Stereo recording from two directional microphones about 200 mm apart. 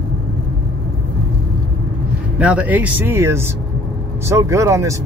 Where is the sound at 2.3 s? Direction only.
5° right (ahead or behind).